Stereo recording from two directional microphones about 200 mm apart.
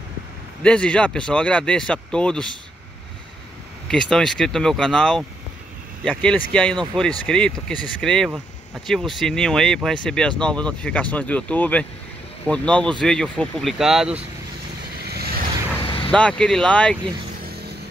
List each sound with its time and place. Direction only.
0.6 s speech: 5° left (ahead or behind)
3.9 s speech: 5° left (ahead or behind)
15.0 s vehicle: 50° right (ahead or behind)
15.8 s vehicle: 25° left (ahead or behind)
16.1 s speech: 5° left (ahead or behind)